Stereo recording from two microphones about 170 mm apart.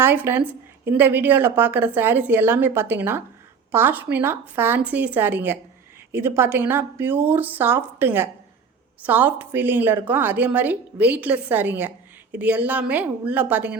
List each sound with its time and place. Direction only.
0.0 s a woman's voice: 10° right (ahead or behind)